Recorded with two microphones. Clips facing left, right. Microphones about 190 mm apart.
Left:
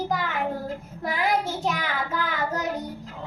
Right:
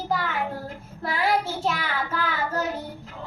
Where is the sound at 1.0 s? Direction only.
20° left (ahead or behind).